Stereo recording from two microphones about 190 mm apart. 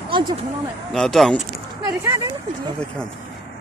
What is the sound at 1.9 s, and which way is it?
Speech, 15° right (ahead or behind).